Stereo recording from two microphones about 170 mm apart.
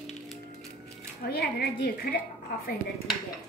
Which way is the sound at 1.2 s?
65° left (ahead or behind).